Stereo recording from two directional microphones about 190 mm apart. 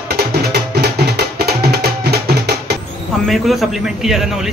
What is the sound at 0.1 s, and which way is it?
Music, 55° right (ahead or behind).